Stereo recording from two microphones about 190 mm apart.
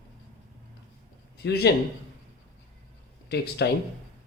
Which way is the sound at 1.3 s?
60° left (ahead or behind).